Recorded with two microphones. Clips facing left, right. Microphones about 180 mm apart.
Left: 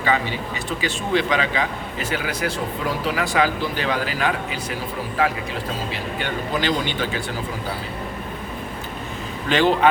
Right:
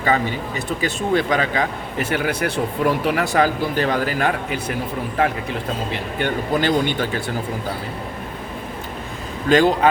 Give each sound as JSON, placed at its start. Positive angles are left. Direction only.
{"t": 0.0, "sound": "a man's voice", "side_deg": -40}
{"t": 6.1, "sound": "a man's voice", "side_deg": -50}
{"t": 9.5, "sound": "speech", "side_deg": -40}